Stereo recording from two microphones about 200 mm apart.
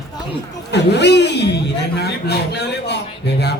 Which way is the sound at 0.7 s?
60° left (ahead or behind).